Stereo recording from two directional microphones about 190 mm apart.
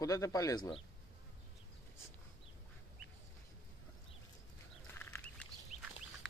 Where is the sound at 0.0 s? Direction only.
20° left (ahead or behind).